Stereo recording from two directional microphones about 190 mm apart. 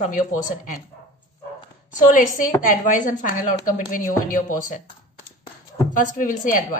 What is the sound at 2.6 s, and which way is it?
A woman's voice, 45° left (ahead or behind).